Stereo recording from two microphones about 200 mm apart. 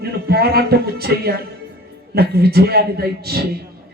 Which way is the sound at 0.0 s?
50° right (ahead or behind).